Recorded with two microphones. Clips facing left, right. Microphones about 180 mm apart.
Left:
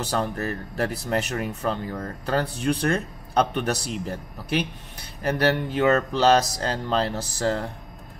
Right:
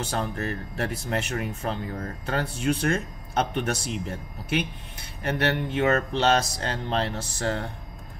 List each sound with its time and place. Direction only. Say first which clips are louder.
0.0 s speech: left 3 dB; 35° left (ahead or behind)